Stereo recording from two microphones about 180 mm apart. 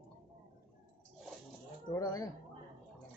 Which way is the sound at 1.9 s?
20° left (ahead or behind).